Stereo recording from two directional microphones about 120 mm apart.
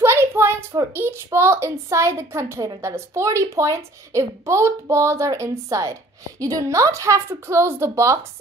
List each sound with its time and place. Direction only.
0.0 s a child's voice: 20° right (ahead or behind)